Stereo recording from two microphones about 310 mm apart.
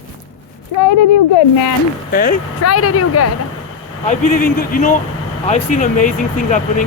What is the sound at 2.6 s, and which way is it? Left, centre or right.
Speech, left.